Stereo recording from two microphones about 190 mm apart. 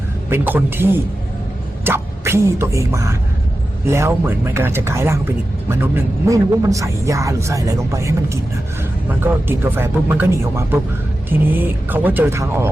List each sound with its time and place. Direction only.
0.3 s speech: 10° right (ahead or behind)